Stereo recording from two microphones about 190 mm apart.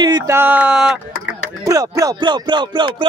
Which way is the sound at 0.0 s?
25° right (ahead or behind).